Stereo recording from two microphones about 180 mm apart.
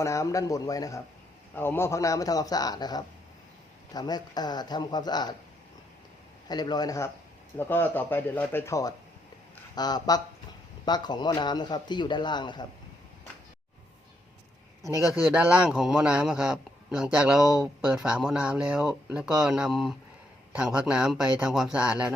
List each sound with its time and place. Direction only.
0.0 s a man's voice: 15° left (ahead or behind)
6.5 s a man's voice: 25° left (ahead or behind)
15.1 s a man's voice: 5° right (ahead or behind)